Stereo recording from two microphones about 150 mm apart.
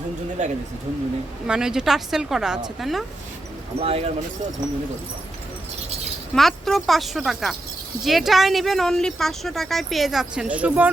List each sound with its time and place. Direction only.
0.4 s speech: 50° right (ahead or behind)
1.5 s speech: 5° right (ahead or behind)
3.8 s speech: 40° right (ahead or behind)
6.3 s speech: centre (ahead or behind)